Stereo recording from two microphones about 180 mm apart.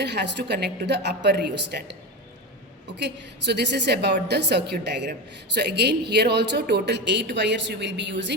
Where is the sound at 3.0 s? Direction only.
70° right (ahead or behind).